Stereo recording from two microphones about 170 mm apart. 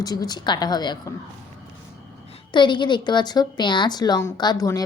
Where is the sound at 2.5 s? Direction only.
30° left (ahead or behind).